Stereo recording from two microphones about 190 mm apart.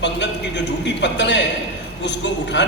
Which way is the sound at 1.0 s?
70° left (ahead or behind).